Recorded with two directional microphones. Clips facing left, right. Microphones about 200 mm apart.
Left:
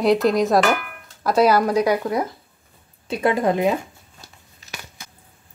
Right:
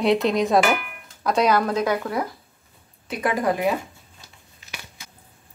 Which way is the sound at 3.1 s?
25° left (ahead or behind).